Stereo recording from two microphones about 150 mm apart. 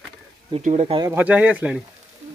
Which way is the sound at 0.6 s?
55° right (ahead or behind).